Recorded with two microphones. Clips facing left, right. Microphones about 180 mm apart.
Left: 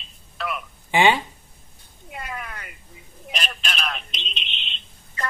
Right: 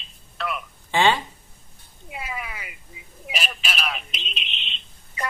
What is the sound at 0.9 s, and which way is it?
Speech, 15° left (ahead or behind).